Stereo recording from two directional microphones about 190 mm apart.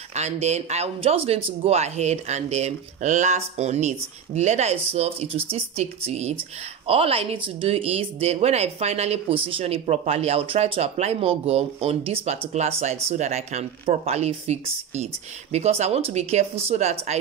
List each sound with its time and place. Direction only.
0.1 s speech: 35° right (ahead or behind)